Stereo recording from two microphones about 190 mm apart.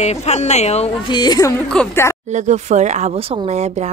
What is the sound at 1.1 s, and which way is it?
Speech, 20° left (ahead or behind).